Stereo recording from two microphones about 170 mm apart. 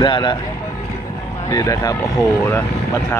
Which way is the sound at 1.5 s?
20° left (ahead or behind).